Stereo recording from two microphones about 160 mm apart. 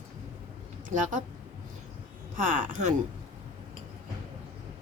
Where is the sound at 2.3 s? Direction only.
55° right (ahead or behind).